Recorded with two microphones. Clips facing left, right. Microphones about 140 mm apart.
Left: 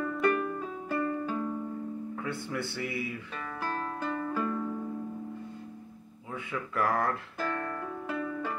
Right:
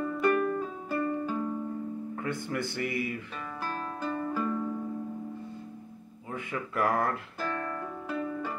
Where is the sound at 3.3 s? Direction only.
10° right (ahead or behind).